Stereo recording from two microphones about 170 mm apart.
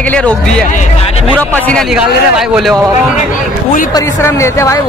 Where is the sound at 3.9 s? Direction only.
15° left (ahead or behind).